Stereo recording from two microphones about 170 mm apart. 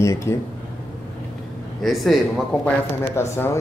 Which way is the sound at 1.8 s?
Centre (ahead or behind).